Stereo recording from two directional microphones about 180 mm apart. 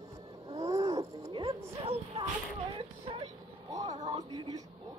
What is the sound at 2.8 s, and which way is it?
Speech, 30° right (ahead or behind).